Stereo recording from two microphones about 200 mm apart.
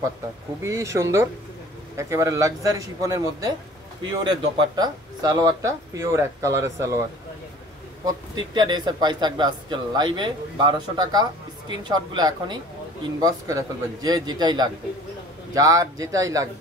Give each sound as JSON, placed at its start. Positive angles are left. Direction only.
{"t": 0.6, "sound": "speech", "side_deg": -15}
{"t": 8.0, "sound": "speech", "side_deg": -20}